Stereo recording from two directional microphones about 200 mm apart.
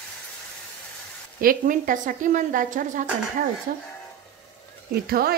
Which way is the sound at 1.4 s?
45° right (ahead or behind).